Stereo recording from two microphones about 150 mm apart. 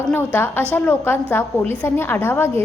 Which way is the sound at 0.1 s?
10° left (ahead or behind).